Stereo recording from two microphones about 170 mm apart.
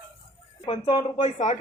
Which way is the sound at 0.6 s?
30° left (ahead or behind).